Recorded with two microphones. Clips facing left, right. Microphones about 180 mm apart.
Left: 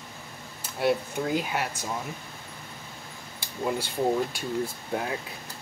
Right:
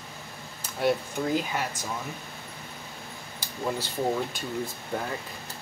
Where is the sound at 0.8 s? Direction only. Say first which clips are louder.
Even; 5° left (ahead or behind).